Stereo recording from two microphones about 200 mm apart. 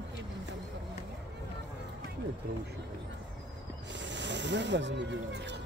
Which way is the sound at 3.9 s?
60° right (ahead or behind).